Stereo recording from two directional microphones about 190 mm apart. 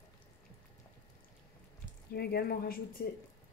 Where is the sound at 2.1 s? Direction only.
55° left (ahead or behind).